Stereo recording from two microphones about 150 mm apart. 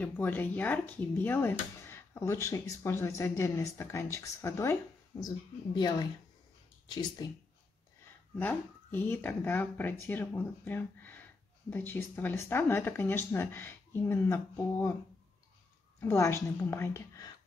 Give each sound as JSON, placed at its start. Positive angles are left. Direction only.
{"t": 0.0, "sound": "speech", "side_deg": 10}
{"t": 8.4, "sound": "speech", "side_deg": 15}
{"t": 16.0, "sound": "speech", "side_deg": 15}